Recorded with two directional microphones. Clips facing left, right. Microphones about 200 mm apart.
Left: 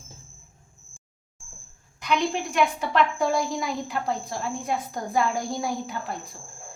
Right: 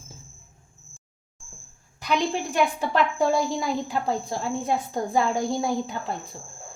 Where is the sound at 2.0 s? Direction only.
35° right (ahead or behind).